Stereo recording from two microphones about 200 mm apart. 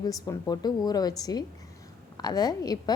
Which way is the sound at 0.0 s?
20° left (ahead or behind).